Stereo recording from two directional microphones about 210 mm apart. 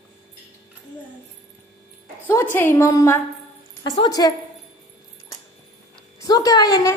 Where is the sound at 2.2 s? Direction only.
10° left (ahead or behind).